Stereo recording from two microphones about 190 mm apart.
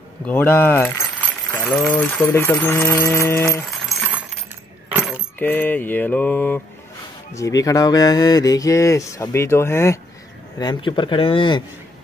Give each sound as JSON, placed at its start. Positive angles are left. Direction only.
{"t": 0.3, "sound": "keys jangling", "side_deg": 10}
{"t": 1.9, "sound": "speech", "side_deg": 15}
{"t": 4.9, "sound": "keys jangling", "side_deg": -5}
{"t": 5.4, "sound": "speech", "side_deg": 10}
{"t": 10.6, "sound": "speech", "side_deg": 25}